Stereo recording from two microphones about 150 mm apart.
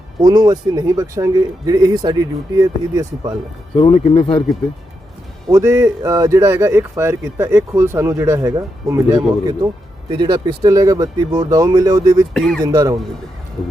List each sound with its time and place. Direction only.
0.2 s speech: 30° right (ahead or behind)
3.8 s speech: 45° left (ahead or behind)
5.5 s speech: 20° right (ahead or behind)
12.3 s speech: 5° left (ahead or behind)
12.6 s speech: 25° right (ahead or behind)